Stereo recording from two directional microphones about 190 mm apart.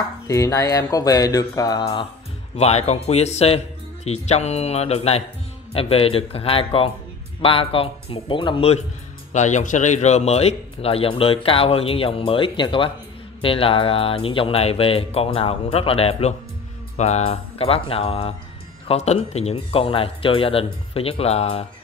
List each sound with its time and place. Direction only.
0.3 s speech: 15° left (ahead or behind)
2.5 s speech: 35° left (ahead or behind)